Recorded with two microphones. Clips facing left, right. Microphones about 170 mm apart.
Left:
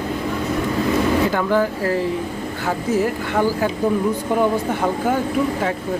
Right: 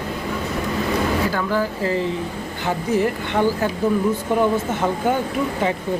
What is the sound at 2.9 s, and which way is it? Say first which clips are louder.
Speech: even; 5° left (ahead or behind).